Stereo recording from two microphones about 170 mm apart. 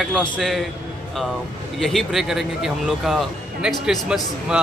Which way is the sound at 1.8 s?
Centre (ahead or behind).